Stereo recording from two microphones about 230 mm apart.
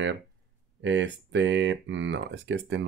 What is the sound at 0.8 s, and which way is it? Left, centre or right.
Speech, right.